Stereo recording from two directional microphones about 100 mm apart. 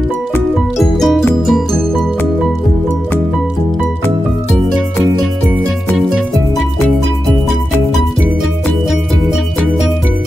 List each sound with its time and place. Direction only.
0.7 s music: centre (ahead or behind)
5.9 s music: centre (ahead or behind)